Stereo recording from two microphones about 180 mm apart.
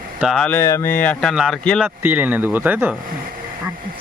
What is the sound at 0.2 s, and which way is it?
Speech, centre (ahead or behind).